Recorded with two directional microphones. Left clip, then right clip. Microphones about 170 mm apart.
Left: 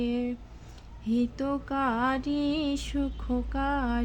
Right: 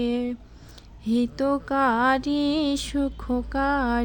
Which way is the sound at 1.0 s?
35° right (ahead or behind).